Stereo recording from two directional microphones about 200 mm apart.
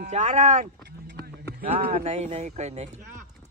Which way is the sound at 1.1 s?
50° right (ahead or behind).